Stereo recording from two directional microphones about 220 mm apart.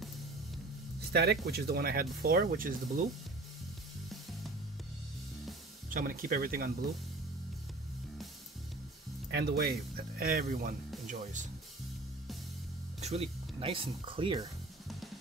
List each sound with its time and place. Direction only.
1.1 s speech: 45° right (ahead or behind)
5.9 s speech: 40° right (ahead or behind)
9.3 s speech: 45° right (ahead or behind)
13.0 s speech: 30° right (ahead or behind)